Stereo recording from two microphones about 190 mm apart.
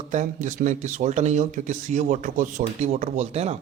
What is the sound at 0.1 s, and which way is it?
Speech, 40° right (ahead or behind).